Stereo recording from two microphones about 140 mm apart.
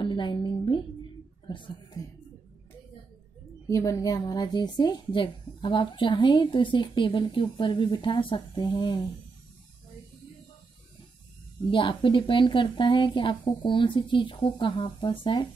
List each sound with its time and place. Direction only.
0.0 s a sound: 35° left (ahead or behind)
3.6 s a woman's voice: 20° left (ahead or behind)
11.7 s a woman's voice: 35° left (ahead or behind)